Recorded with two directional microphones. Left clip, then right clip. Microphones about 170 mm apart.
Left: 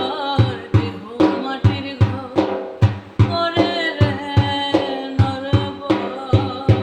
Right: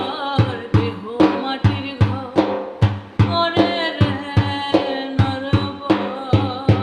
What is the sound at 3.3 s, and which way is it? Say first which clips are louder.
Music: right 1 dB; 20° right (ahead or behind).